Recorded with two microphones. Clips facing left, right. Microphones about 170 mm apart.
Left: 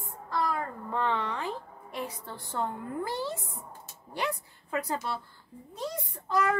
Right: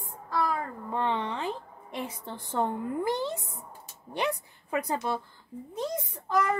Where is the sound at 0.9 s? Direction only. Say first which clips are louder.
Right 1 dB; 20° right (ahead or behind).